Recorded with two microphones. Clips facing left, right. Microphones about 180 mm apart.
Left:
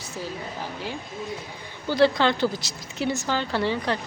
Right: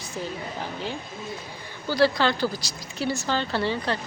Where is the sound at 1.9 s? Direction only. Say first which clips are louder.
Left 2 dB; 20° left (ahead or behind).